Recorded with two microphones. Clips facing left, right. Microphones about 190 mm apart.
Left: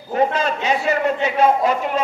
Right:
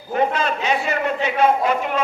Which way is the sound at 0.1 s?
35° left (ahead or behind).